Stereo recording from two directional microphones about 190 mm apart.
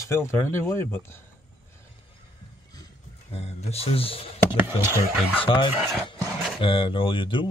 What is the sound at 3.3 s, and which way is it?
Speech, 35° left (ahead or behind).